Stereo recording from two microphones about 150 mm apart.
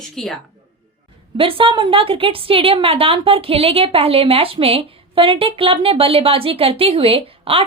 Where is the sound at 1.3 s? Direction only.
35° right (ahead or behind).